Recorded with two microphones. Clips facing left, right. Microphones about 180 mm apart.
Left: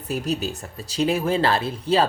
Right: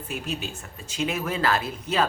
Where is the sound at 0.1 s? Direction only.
40° left (ahead or behind).